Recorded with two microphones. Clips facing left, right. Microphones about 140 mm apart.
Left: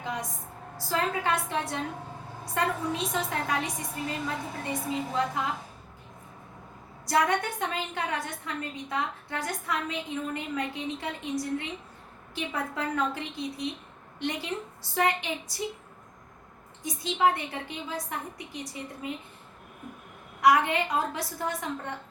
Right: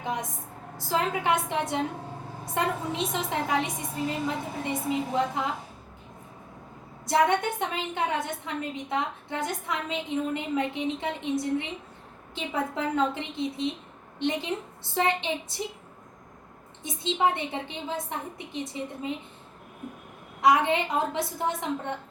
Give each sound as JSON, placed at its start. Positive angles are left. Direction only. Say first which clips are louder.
{"t": 0.0, "sound": "vehicle", "louder": "right 3 dB", "side_deg": -20}
{"t": 0.9, "sound": "a woman's voice", "louder": "right 2 dB", "side_deg": -20}
{"t": 7.0, "sound": "a woman's voice", "louder": "right 2 dB", "side_deg": -20}
{"t": 16.8, "sound": "a woman's voice", "louder": "even", "side_deg": -25}
{"t": 20.4, "sound": "a woman's voice", "louder": "right 1 dB", "side_deg": -20}